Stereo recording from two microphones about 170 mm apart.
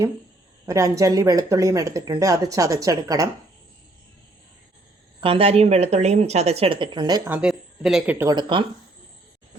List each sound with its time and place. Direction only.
0.6 s speech: 20° right (ahead or behind)
5.2 s speech: 35° right (ahead or behind)
7.3 s speech: 5° right (ahead or behind)
8.3 s speech: 25° right (ahead or behind)